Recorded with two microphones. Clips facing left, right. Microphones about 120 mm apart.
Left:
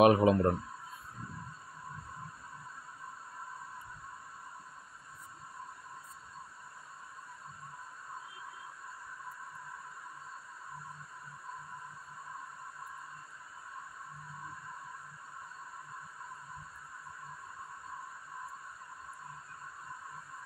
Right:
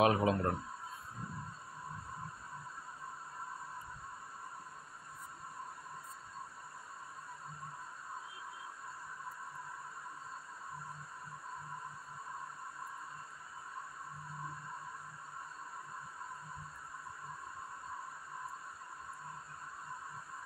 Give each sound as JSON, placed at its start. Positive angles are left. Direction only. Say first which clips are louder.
{"t": 0.0, "sound": "speech", "louder": "left 6 dB", "side_deg": 20}